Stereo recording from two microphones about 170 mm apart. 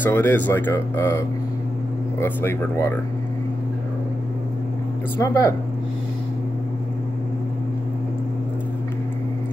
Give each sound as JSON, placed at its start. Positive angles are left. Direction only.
{"t": 0.0, "sound": "speech", "side_deg": 10}
{"t": 5.2, "sound": "speech", "side_deg": 20}